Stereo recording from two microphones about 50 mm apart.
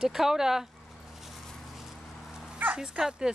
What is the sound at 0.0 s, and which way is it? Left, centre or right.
Speech, centre.